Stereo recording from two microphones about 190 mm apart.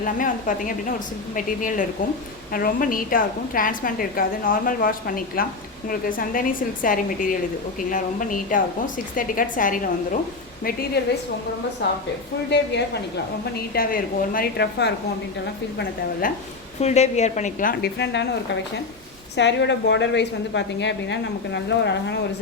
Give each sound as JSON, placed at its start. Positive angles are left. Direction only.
{"t": 0.0, "sound": "a woman's voice", "side_deg": 45}
{"t": 11.8, "sound": "a woman's voice", "side_deg": 65}
{"t": 13.4, "sound": "a woman's voice", "side_deg": 50}
{"t": 16.2, "sound": "a woman's voice", "side_deg": 45}
{"t": 16.8, "sound": "a woman's voice", "side_deg": 35}
{"t": 19.4, "sound": "a woman's voice", "side_deg": 65}